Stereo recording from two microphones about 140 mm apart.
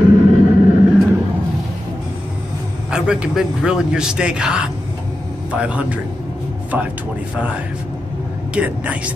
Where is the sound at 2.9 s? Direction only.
5° right (ahead or behind).